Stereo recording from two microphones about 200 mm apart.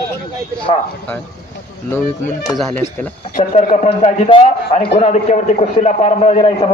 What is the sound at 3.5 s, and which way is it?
A man's voice, 30° left (ahead or behind).